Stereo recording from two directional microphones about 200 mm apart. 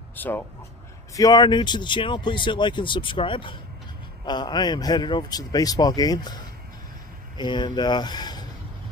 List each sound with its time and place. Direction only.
0.1 s speech: 10° left (ahead or behind)